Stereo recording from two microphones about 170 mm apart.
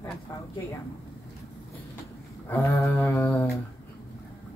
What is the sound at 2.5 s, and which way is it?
Speech, 15° left (ahead or behind).